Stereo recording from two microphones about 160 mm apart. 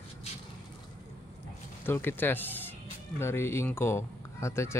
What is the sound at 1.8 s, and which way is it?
Speech, 15° left (ahead or behind).